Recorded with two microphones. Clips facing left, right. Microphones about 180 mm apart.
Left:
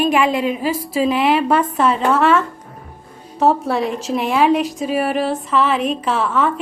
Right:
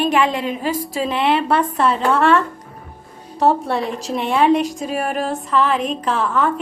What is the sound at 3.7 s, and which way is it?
A woman's voice, 35° right (ahead or behind).